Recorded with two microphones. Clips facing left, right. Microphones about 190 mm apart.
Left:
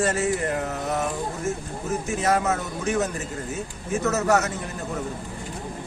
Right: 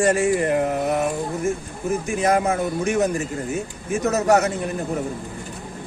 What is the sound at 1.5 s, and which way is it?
Speech, 10° right (ahead or behind).